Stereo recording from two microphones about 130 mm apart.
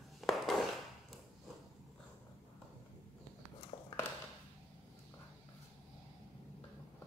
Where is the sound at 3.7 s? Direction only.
40° left (ahead or behind).